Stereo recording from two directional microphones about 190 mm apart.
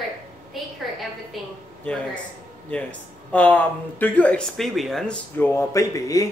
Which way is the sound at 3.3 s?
10° left (ahead or behind).